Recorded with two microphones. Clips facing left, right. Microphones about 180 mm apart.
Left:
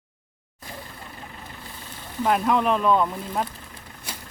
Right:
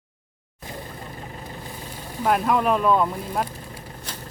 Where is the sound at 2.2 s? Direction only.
5° right (ahead or behind).